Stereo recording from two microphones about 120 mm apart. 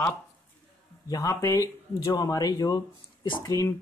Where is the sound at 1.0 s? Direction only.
30° left (ahead or behind).